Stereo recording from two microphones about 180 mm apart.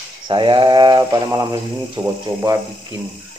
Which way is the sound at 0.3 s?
25° right (ahead or behind).